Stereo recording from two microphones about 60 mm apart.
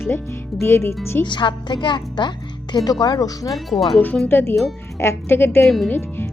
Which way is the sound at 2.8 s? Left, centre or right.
Left.